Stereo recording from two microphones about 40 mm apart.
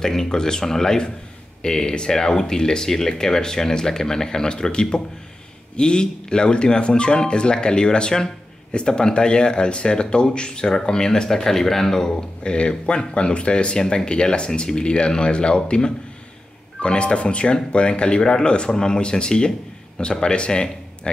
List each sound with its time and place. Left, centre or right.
0.0 s speech: centre